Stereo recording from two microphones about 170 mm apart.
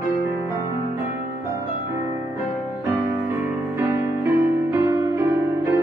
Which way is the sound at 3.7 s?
15° right (ahead or behind).